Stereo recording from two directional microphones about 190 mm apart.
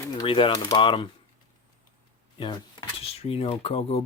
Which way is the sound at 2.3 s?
20° left (ahead or behind).